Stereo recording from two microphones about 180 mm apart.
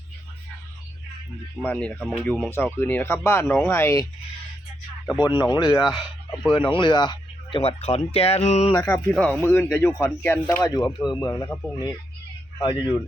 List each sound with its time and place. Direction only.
1.6 s speech: 10° left (ahead or behind)
5.1 s speech: 25° left (ahead or behind)
5.9 s speech: centre (ahead or behind)
6.5 s speech: 30° left (ahead or behind)
8.7 s speech: 15° left (ahead or behind)
10.6 s speech: 20° left (ahead or behind)